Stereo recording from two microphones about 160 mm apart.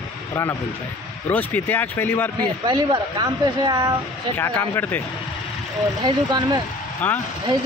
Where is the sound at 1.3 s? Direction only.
10° left (ahead or behind).